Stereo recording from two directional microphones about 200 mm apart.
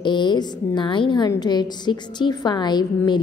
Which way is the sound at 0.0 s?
25° left (ahead or behind).